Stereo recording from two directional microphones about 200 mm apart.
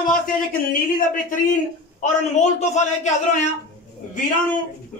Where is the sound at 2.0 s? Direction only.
35° left (ahead or behind).